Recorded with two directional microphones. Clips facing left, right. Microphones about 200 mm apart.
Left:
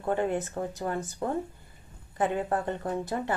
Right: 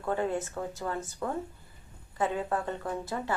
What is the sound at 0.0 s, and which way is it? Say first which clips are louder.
A woman's voice: left 2 dB; 20° left (ahead or behind).